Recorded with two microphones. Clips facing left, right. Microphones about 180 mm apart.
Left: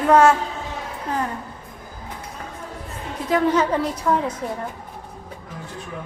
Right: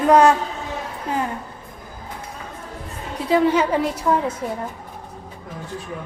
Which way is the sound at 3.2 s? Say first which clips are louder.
Right 2 dB; 10° right (ahead or behind).